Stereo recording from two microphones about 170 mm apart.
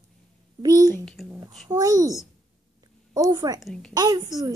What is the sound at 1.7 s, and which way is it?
Speech, 20° right (ahead or behind).